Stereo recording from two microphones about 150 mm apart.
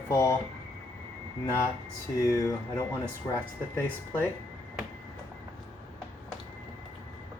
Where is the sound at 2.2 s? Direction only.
20° left (ahead or behind).